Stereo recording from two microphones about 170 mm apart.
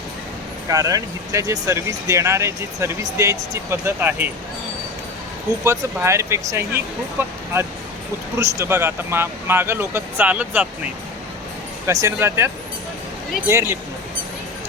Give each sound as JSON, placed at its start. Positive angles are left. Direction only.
{"t": 0.7, "sound": "speech", "side_deg": -20}
{"t": 5.6, "sound": "speech", "side_deg": -15}
{"t": 11.9, "sound": "speech", "side_deg": -20}
{"t": 13.5, "sound": "speech", "side_deg": -15}